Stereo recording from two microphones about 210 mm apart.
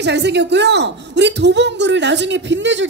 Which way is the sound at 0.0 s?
55° right (ahead or behind).